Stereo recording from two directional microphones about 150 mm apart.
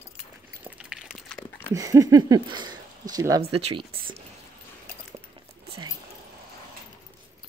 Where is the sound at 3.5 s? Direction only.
40° right (ahead or behind).